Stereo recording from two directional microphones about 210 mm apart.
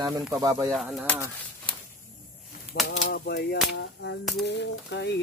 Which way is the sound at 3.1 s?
55° left (ahead or behind).